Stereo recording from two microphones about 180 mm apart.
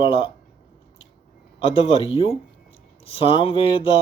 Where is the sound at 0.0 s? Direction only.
30° left (ahead or behind).